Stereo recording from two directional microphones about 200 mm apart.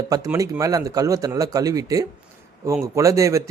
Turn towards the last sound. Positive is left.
turn(degrees=-15)  # may be behind; listen again after turning